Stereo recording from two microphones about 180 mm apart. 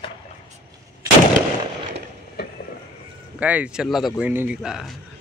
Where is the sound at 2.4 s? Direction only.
60° left (ahead or behind).